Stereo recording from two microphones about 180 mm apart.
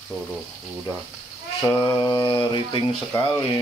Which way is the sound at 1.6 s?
15° left (ahead or behind).